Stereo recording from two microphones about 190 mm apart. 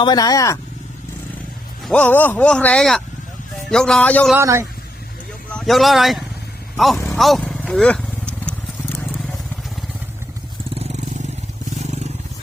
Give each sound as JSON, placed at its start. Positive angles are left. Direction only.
{"t": 0.0, "sound": "speech", "side_deg": 20}
{"t": 1.8, "sound": "a man's voice", "side_deg": 5}
{"t": 4.4, "sound": "a man's voice", "side_deg": -15}
{"t": 5.5, "sound": "speech", "side_deg": 5}
{"t": 7.2, "sound": "wild animals", "side_deg": 0}